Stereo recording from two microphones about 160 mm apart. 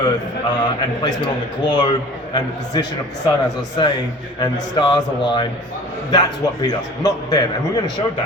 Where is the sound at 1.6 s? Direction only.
30° left (ahead or behind).